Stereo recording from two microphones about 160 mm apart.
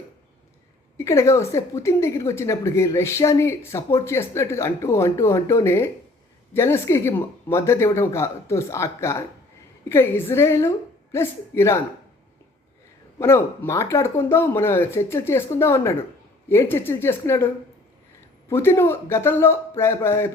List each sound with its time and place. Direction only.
0.9 s a woman's voice: 20° left (ahead or behind)
13.1 s a woman's voice: 15° left (ahead or behind)